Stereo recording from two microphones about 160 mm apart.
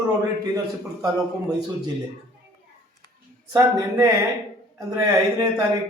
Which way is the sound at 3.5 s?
20° right (ahead or behind).